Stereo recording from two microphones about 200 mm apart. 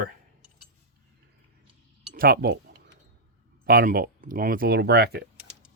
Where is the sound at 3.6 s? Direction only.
45° right (ahead or behind).